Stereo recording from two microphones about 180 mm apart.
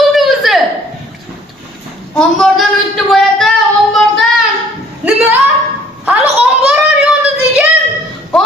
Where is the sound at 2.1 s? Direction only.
Centre (ahead or behind).